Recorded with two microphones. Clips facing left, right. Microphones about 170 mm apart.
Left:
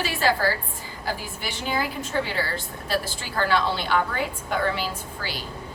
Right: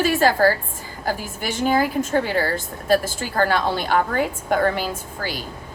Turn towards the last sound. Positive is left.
turn(degrees=-45)  # may be behind; listen again after turning